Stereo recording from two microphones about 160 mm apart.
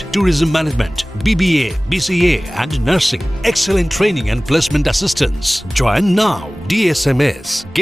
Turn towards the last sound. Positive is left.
turn(degrees=0)  # may be behind; listen again after turning